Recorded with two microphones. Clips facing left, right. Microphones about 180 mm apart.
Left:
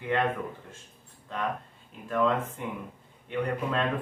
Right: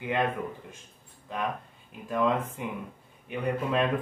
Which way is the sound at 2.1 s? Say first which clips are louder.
Even; 15° right (ahead or behind).